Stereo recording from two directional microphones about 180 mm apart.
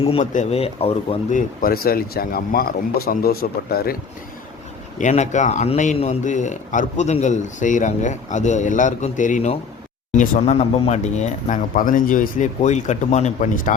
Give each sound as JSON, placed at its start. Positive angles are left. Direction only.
{"t": 0.0, "sound": "a man's voice", "side_deg": 35}
{"t": 1.4, "sound": "speech", "side_deg": 55}
{"t": 4.9, "sound": "a man's voice", "side_deg": 40}